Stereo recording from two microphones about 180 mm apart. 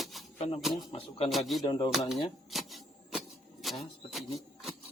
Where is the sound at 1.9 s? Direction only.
Centre (ahead or behind).